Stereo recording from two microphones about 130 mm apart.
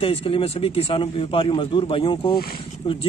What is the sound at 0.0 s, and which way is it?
A man's voice, 45° left (ahead or behind).